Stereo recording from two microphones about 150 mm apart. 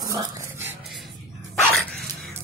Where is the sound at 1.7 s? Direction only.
5° left (ahead or behind).